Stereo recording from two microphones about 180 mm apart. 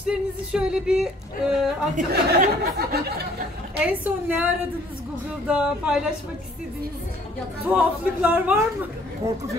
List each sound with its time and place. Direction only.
0.0 s speech: 5° right (ahead or behind)
2.0 s speech: 45° right (ahead or behind)
3.8 s speech: 10° right (ahead or behind)
7.6 s speech: 10° right (ahead or behind)